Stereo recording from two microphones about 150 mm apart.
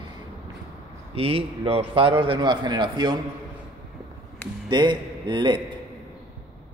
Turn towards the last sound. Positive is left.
turn(degrees=-30)  # may be behind; listen again after turning